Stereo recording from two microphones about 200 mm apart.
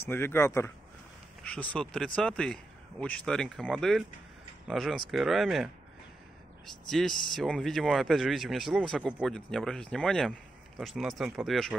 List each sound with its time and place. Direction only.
0.0 s speech: 10° left (ahead or behind)